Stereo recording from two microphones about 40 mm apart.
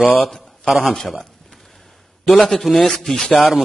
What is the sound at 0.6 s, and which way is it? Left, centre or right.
Speech, left.